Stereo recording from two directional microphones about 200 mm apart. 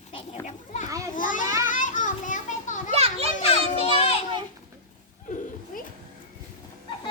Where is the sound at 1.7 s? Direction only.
40° left (ahead or behind).